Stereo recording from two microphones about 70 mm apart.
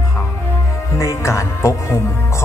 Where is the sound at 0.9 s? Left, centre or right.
Left.